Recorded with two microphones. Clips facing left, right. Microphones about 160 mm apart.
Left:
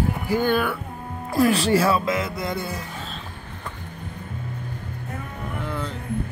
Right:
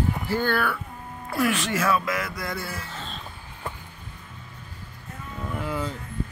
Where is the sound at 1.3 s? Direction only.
35° left (ahead or behind); by 3.1 s 20° left (ahead or behind).